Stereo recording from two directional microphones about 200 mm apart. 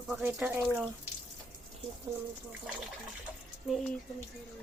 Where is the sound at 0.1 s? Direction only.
10° right (ahead or behind).